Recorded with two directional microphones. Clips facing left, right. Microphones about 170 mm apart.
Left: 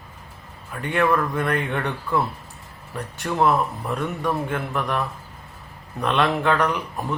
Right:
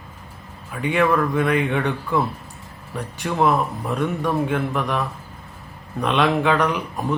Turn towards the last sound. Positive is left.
turn(degrees=0)  # may be behind; listen again after turning